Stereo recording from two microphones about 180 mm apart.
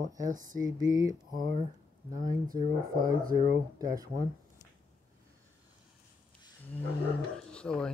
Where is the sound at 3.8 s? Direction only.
20° right (ahead or behind).